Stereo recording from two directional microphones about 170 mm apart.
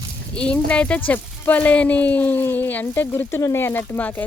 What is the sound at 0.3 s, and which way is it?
Speech, 5° left (ahead or behind).